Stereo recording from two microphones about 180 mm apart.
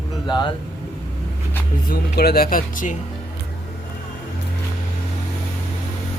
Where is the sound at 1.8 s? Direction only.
55° left (ahead or behind).